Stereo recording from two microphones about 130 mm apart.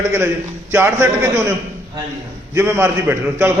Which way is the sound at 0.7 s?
20° right (ahead or behind).